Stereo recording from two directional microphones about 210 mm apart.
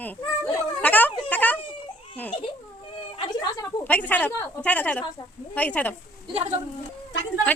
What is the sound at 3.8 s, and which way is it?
Speech, 10° left (ahead or behind).